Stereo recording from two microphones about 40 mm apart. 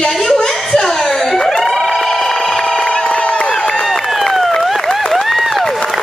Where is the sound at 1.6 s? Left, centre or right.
Centre.